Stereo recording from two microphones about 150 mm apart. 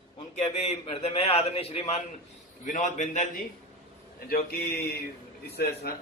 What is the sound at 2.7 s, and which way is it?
Speech, 55° left (ahead or behind).